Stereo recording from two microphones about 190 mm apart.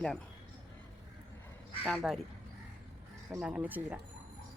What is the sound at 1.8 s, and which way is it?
Speech, centre (ahead or behind).